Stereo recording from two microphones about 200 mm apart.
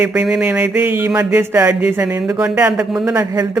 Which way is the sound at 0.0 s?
5° right (ahead or behind).